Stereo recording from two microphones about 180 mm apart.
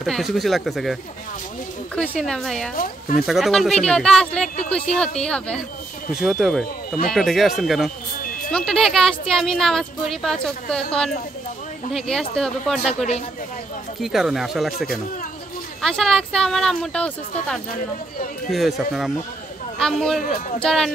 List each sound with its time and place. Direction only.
0.0 s a woman's voice: centre (ahead or behind)
2.0 s a woman's voice: 5° left (ahead or behind)
2.8 s speech: 50° left (ahead or behind)
3.3 s a woman's voice: centre (ahead or behind)
14.0 s a woman's voice: centre (ahead or behind)
15.8 s a woman's voice: 5° left (ahead or behind)